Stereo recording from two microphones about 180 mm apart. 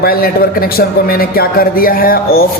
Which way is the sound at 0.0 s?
55° left (ahead or behind).